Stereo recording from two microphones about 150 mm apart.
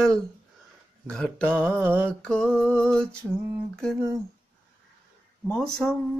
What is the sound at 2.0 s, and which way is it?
Speech, 5° left (ahead or behind).